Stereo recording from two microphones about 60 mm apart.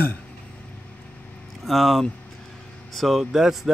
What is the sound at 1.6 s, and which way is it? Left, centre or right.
Speech, centre.